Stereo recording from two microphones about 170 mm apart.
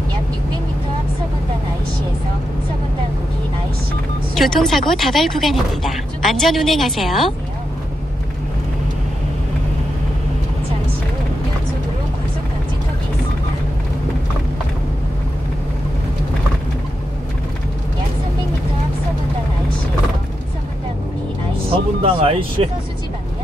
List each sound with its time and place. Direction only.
4.4 s speech: centre (ahead or behind)
22.0 s speech: 35° right (ahead or behind)